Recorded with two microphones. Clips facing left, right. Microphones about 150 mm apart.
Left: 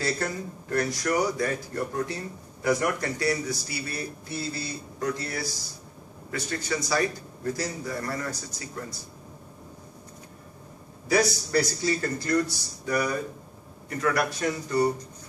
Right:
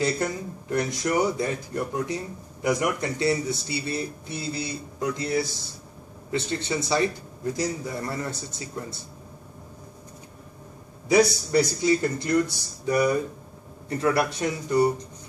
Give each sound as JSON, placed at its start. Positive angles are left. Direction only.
{"t": 0.0, "sound": "speech", "side_deg": -15}
{"t": 11.1, "sound": "speech", "side_deg": -20}